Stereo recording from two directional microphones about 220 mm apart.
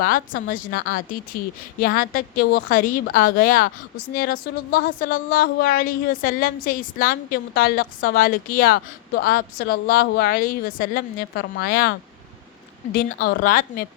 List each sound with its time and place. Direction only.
0.0 s a woman's voice: 40° left (ahead or behind)